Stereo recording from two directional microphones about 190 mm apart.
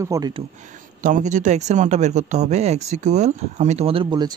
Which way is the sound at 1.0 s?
45° right (ahead or behind).